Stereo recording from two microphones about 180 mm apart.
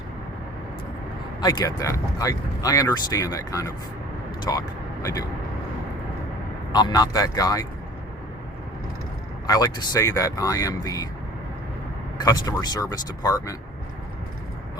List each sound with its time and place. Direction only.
1.4 s speech: 20° left (ahead or behind)
6.7 s speech: 25° left (ahead or behind)
9.5 s speech: 20° left (ahead or behind)
12.2 s speech: 20° left (ahead or behind)